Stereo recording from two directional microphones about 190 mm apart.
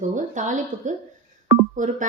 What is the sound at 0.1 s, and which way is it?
Speech, 40° right (ahead or behind).